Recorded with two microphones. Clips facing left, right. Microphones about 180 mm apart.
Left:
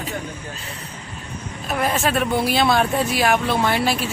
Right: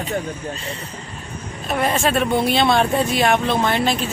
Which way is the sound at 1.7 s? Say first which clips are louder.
Right 2 dB; centre (ahead or behind).